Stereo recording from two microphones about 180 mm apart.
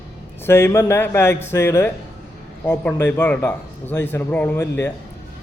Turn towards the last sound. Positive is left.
turn(degrees=10)  # may be behind; listen again after turning